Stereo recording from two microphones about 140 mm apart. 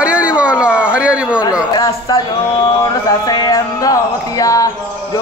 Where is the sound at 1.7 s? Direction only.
30° left (ahead or behind).